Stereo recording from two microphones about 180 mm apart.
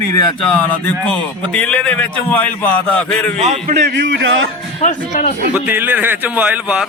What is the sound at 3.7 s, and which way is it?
Speech, 70° right (ahead or behind).